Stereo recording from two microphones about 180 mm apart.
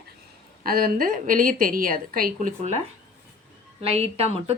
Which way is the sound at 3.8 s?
35° right (ahead or behind).